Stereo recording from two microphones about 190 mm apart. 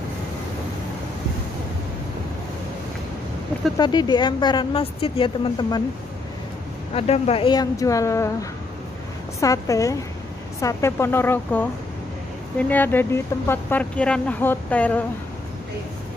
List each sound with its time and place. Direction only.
3.7 s a woman's voice: 20° left (ahead or behind)
7.0 s speech: 30° left (ahead or behind); by 15.0 s 10° left (ahead or behind)